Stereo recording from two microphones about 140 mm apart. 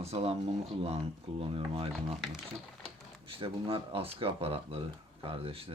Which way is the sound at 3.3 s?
40° right (ahead or behind).